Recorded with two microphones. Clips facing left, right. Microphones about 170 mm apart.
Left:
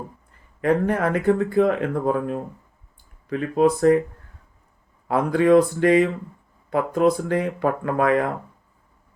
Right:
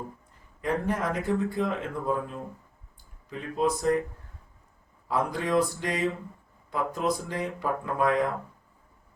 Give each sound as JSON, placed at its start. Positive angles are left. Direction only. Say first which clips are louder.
{"t": 0.6, "sound": "speech", "louder": "left 8 dB", "side_deg": 60}
{"t": 5.0, "sound": "speech", "louder": "left 10 dB", "side_deg": 60}